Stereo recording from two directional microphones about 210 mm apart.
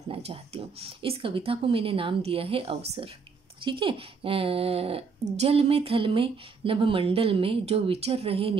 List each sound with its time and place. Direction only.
0.1 s speech: 25° right (ahead or behind)